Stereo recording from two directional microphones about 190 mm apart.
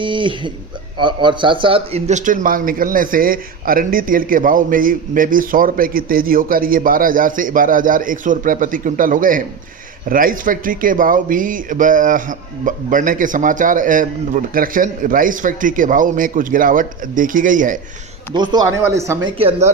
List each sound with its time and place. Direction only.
0.0 s a man's voice: 25° right (ahead or behind); by 17.7 s 45° right (ahead or behind)
18.3 s speech: 20° right (ahead or behind)
19.4 s speech: 35° right (ahead or behind)